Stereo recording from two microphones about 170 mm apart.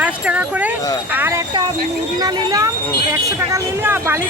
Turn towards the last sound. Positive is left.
turn(degrees=-15)  # may be behind; listen again after turning